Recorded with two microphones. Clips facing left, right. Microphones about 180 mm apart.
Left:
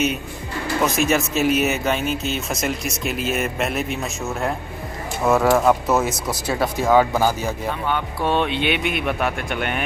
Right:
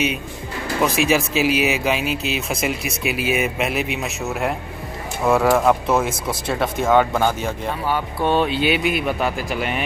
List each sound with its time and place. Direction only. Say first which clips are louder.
1.0 s speech: right 1 dB; centre (ahead or behind)